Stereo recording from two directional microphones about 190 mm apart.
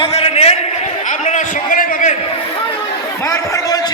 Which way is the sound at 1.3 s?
45° left (ahead or behind).